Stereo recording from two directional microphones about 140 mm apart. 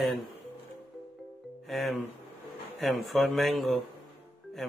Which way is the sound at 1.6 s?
Centre (ahead or behind).